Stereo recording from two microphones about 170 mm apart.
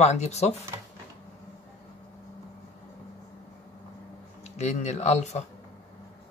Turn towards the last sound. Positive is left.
turn(degrees=40)  # may be behind; listen again after turning